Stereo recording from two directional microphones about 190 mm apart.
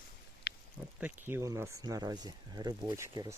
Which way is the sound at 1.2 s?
15° right (ahead or behind).